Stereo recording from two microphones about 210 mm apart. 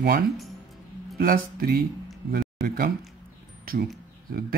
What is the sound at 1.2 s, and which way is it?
Speech, 45° right (ahead or behind).